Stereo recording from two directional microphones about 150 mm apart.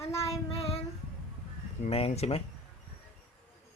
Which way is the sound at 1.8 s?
45° left (ahead or behind).